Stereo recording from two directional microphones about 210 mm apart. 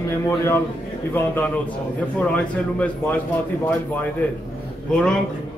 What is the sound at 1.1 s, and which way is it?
A man's voice, 10° left (ahead or behind).